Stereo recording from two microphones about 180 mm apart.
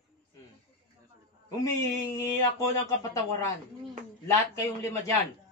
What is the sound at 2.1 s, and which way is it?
Speech, 15° left (ahead or behind).